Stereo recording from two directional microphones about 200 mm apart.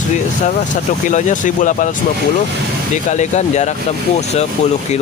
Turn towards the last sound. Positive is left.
turn(degrees=35)  # may be behind; listen again after turning